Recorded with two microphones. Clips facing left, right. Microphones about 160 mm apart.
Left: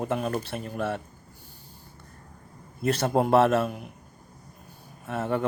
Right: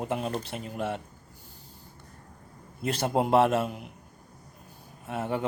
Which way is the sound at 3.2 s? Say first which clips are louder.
Left 2 dB; 15° right (ahead or behind).